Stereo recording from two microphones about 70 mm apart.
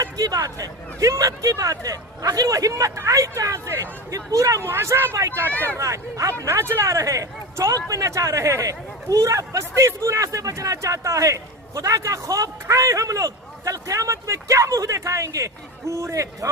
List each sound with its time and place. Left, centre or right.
0.0 s speech: right
4.6 s speech: right
5.5 s speech: left
5.7 s speech: right
6.4 s speech: right